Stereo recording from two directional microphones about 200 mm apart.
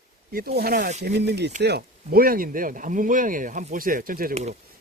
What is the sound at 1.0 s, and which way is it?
Speech, 55° right (ahead or behind).